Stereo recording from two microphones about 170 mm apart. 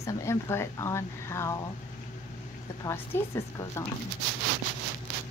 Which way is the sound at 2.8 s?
15° left (ahead or behind).